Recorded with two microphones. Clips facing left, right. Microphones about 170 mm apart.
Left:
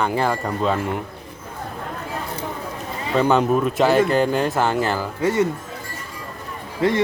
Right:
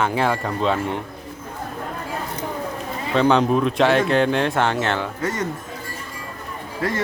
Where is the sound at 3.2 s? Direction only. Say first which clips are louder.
Even; 5° left (ahead or behind).